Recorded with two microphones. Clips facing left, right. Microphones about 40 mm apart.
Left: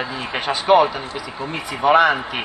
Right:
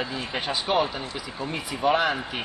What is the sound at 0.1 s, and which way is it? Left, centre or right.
A man's voice, left.